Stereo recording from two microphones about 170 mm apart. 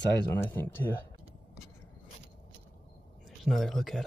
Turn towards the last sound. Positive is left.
turn(degrees=0)  # may be behind; listen again after turning